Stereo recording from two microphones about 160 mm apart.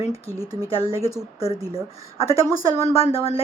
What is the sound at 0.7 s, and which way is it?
Speech, 35° left (ahead or behind).